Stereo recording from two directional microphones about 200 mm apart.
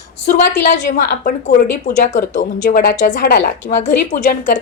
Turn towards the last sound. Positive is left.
turn(degrees=40)  # may be behind; listen again after turning